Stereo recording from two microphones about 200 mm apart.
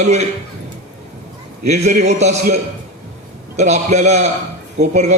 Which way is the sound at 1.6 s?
35° right (ahead or behind).